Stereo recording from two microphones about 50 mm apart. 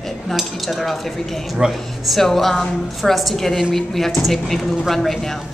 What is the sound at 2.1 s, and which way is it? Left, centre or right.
A woman's voice, centre.